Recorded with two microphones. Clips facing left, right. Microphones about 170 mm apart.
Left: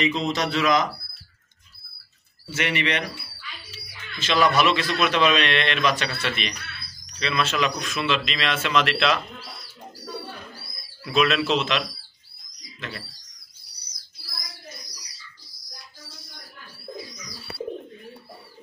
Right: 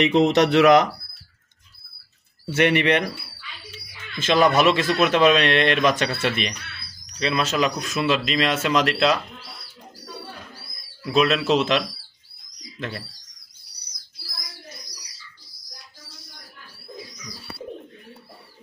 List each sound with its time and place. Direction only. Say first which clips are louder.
0.0 s speech: right 7 dB; 70° right (ahead or behind)
2.4 s speech: right 7 dB; 55° right (ahead or behind); by 9.2 s 40° right (ahead or behind)
11.1 s speech: right 2 dB; 35° right (ahead or behind)